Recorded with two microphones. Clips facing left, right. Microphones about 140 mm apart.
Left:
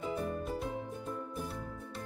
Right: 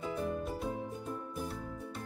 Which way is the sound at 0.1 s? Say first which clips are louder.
Right 1 dB; centre (ahead or behind).